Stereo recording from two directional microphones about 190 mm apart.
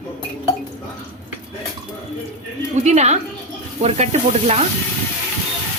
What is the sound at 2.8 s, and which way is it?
Speech, 35° right (ahead or behind).